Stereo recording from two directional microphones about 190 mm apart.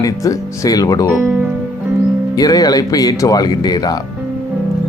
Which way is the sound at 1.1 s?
10° right (ahead or behind).